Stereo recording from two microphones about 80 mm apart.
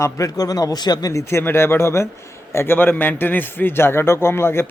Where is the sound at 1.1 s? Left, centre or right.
Left.